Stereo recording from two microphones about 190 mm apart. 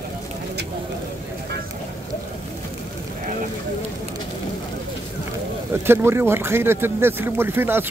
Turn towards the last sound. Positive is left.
turn(degrees=-10)  # may be behind; listen again after turning